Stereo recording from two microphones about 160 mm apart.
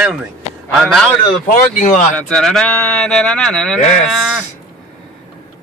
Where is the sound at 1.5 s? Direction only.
55° left (ahead or behind).